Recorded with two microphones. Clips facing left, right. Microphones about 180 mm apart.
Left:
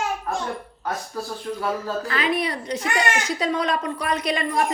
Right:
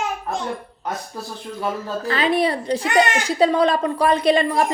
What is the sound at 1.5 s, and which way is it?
A woman's voice, 25° right (ahead or behind).